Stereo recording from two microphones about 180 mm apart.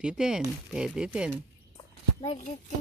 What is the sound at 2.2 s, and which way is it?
Speech, 40° left (ahead or behind).